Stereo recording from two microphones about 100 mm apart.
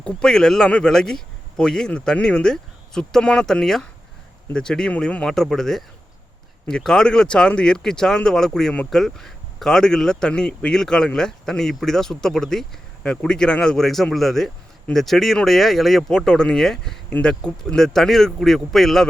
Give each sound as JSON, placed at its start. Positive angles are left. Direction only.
{"t": 0.0, "sound": "speech", "side_deg": 5}